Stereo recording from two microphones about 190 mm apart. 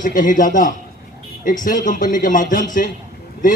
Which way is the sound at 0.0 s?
45° left (ahead or behind).